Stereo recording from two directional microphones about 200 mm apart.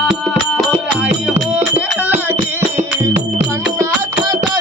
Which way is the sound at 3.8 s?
20° right (ahead or behind).